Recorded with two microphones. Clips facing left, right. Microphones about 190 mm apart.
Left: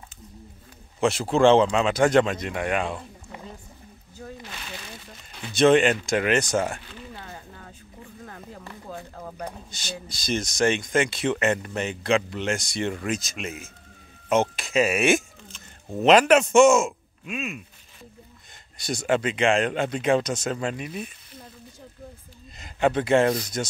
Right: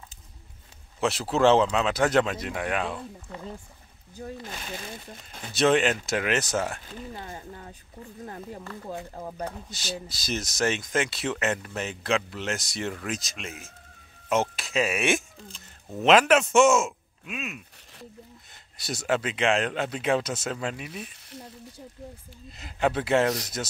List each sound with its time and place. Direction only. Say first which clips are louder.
1.0 s speech: left 3 dB; 5° right (ahead or behind)
4.5 s speech: right 2 dB; 40° right (ahead or behind)
5.5 s speech: left 4 dB; 5° right (ahead or behind)
7.2 s speech: right 2 dB; 25° right (ahead or behind)
8.8 s speech: right 1 dB; 20° right (ahead or behind)
9.7 s speech: right 2 dB; 5° right (ahead or behind)
18.8 s speech: left 3 dB; 5° right (ahead or behind)
22.6 s speech: left 3 dB; 5° right (ahead or behind)